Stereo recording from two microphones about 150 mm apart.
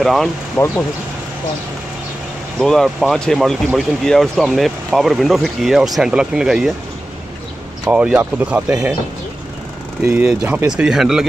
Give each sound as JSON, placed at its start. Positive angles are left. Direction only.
{"t": 0.0, "sound": "speech", "side_deg": 0}
{"t": 0.6, "sound": "speech", "side_deg": 20}
{"t": 2.6, "sound": "speech", "side_deg": 0}
{"t": 7.8, "sound": "speech", "side_deg": -5}
{"t": 10.0, "sound": "speech", "side_deg": -10}